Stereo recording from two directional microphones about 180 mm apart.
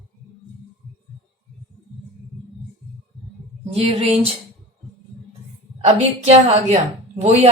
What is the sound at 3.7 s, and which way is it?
Speech, 35° right (ahead or behind).